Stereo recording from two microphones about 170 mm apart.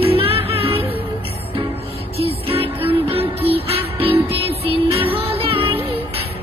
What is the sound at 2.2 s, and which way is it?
Music, 35° right (ahead or behind).